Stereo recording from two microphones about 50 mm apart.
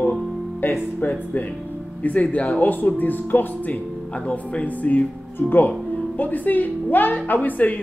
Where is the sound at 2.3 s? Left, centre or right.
Left.